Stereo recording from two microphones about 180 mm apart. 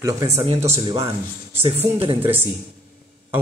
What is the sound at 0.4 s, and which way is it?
Speech, 35° right (ahead or behind).